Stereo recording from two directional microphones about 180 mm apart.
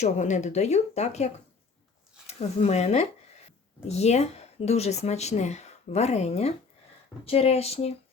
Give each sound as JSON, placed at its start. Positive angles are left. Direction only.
{"t": 0.0, "sound": "speech", "side_deg": 40}